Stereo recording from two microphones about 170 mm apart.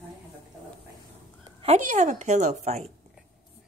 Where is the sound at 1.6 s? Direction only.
40° right (ahead or behind).